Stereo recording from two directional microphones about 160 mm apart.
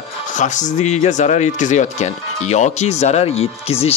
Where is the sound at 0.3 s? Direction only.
50° left (ahead or behind).